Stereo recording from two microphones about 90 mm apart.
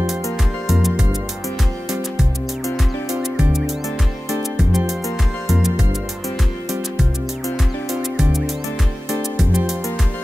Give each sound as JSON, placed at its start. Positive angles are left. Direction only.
{"t": 0.7, "sound": "music", "side_deg": -5}
{"t": 3.1, "sound": "music", "side_deg": -5}
{"t": 6.7, "sound": "music", "side_deg": 0}